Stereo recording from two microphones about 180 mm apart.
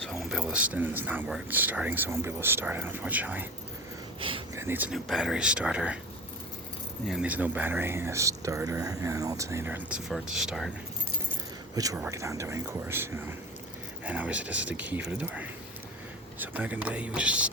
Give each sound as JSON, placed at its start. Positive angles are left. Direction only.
{"t": 0.0, "sound": "speech", "side_deg": 0}
{"t": 4.2, "sound": "a sound", "side_deg": -30}
{"t": 4.5, "sound": "speech", "side_deg": -10}
{"t": 7.1, "sound": "speech", "side_deg": -5}
{"t": 11.7, "sound": "speech", "side_deg": -20}